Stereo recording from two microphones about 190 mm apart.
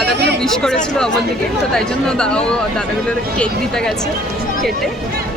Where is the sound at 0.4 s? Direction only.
5° left (ahead or behind).